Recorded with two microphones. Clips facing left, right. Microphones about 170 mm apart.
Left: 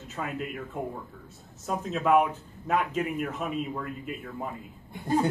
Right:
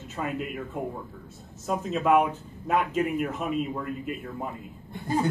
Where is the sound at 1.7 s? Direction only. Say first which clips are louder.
Right 1 dB; centre (ahead or behind).